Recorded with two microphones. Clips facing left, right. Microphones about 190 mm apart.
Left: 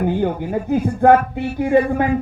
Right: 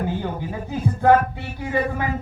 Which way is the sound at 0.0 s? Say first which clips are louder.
Left 7 dB; 55° left (ahead or behind).